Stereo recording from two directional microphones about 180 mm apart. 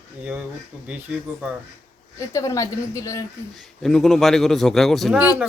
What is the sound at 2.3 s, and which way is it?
Speech, 20° left (ahead or behind).